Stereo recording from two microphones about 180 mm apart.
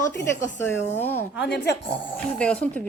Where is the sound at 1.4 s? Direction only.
70° left (ahead or behind).